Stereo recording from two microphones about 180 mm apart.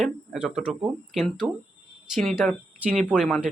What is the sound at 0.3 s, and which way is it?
Speech, 5° right (ahead or behind).